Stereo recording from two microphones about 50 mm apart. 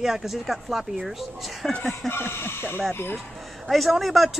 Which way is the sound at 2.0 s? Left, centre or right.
Left.